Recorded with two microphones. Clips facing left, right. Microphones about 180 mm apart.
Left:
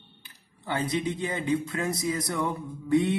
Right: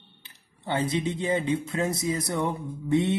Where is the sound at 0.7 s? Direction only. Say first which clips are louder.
Right 1 dB; 25° right (ahead or behind).